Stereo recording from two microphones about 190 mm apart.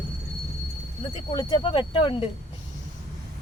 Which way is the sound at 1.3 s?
20° left (ahead or behind).